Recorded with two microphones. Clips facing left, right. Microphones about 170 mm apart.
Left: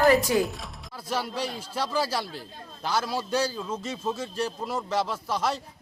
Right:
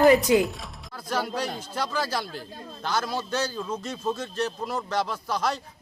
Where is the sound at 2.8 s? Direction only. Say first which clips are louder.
Even; 5° left (ahead or behind).